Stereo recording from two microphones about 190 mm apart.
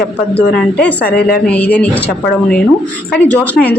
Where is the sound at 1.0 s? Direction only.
55° left (ahead or behind).